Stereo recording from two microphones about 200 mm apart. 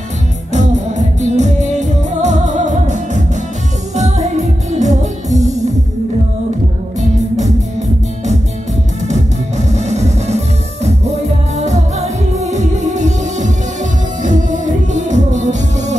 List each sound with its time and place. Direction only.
0.5 s music: 35° right (ahead or behind)
4.7 s music: 35° right (ahead or behind)
7.0 s music: 35° right (ahead or behind)
9.0 s music: 35° right (ahead or behind)